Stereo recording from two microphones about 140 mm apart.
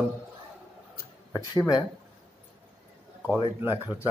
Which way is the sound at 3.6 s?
15° right (ahead or behind).